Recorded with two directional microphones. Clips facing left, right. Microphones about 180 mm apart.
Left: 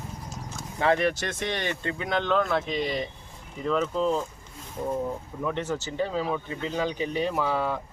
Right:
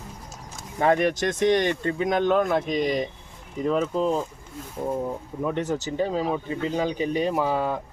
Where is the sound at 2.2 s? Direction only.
15° right (ahead or behind).